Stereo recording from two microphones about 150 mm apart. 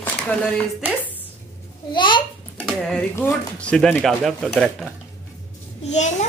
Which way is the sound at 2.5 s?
5° left (ahead or behind).